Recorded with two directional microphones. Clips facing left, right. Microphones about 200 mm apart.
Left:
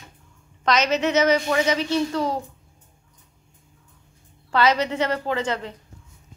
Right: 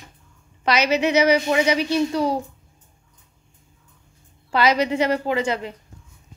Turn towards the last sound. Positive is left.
turn(degrees=-10)  # may be behind; listen again after turning